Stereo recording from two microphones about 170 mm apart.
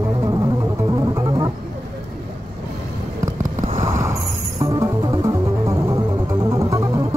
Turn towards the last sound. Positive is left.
turn(degrees=-20)  # may be behind; listen again after turning